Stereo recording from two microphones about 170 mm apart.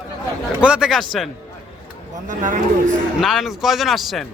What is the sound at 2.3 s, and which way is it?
Speech, 50° right (ahead or behind).